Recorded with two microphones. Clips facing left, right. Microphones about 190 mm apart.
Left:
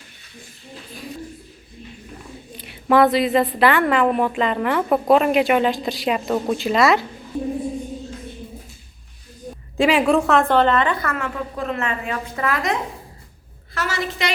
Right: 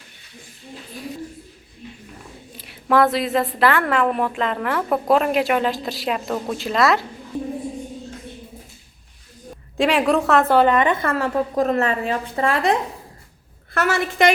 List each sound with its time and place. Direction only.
2.6 s a woman's voice: centre (ahead or behind)
9.7 s a woman's voice: centre (ahead or behind); by 12.7 s 30° right (ahead or behind)
13.7 s a woman's voice: 55° right (ahead or behind)